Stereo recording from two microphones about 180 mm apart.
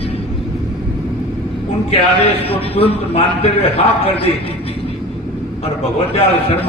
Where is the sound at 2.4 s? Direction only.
30° left (ahead or behind).